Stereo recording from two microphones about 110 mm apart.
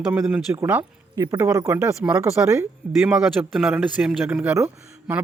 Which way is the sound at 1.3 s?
30° right (ahead or behind).